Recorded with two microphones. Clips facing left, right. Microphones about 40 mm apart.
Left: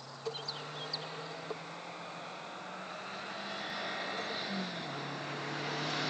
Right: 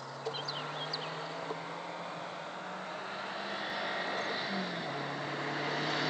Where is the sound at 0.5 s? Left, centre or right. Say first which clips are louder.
Right 4 dB; right.